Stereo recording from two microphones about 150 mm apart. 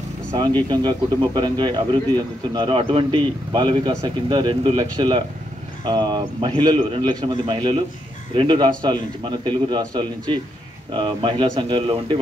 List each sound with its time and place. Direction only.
0.7 s a man's voice: 30° right (ahead or behind)